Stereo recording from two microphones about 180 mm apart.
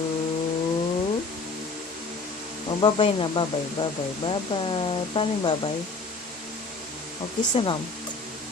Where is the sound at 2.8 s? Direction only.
30° left (ahead or behind).